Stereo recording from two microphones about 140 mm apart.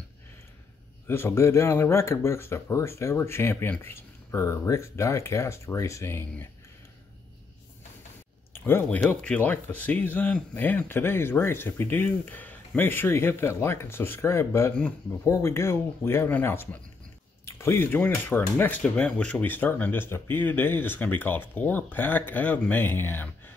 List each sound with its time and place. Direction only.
1.0 s speech: 15° left (ahead or behind)
8.5 s a man's voice: 15° left (ahead or behind)